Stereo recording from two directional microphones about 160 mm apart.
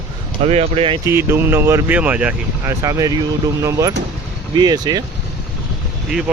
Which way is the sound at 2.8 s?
20° right (ahead or behind).